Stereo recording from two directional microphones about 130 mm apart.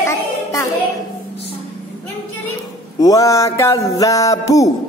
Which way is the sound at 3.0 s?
25° left (ahead or behind).